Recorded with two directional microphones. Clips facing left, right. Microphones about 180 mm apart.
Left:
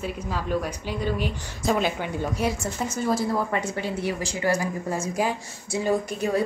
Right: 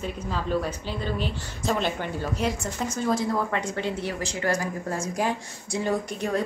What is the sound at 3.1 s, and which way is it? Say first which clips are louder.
Speech: left 1 dB; 5° left (ahead or behind).